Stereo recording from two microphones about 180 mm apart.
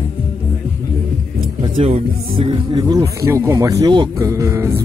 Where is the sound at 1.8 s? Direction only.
30° right (ahead or behind).